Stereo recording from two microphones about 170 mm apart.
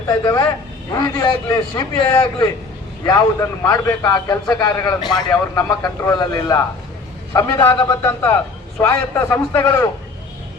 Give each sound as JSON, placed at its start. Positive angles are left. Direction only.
{"t": 0.1, "sound": "a man's voice", "side_deg": 20}